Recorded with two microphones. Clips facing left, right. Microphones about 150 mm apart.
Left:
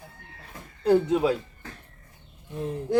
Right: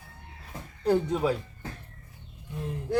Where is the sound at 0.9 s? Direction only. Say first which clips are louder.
Left 4 dB; 10° left (ahead or behind).